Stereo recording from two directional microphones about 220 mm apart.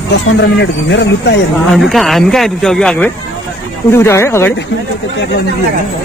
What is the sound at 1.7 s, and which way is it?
Speech, centre (ahead or behind).